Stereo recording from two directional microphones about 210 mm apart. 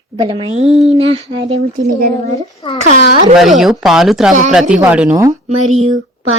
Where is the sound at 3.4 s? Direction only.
Centre (ahead or behind).